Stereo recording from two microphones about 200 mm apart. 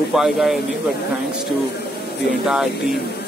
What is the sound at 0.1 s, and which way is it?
Speech, centre (ahead or behind).